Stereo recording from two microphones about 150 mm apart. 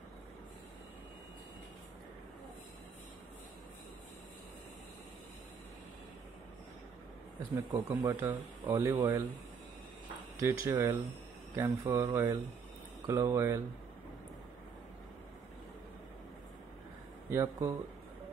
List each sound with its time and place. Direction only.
7.5 s speech: 20° right (ahead or behind)
10.4 s speech: 20° right (ahead or behind)
17.3 s speech: 15° right (ahead or behind)